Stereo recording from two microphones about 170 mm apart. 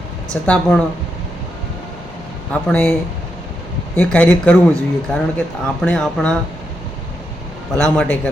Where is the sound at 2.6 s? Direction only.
10° left (ahead or behind).